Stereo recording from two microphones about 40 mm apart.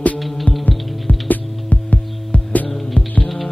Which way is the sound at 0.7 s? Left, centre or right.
Left.